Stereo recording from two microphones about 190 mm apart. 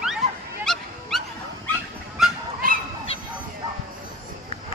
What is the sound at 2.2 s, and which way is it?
Goose, centre (ahead or behind).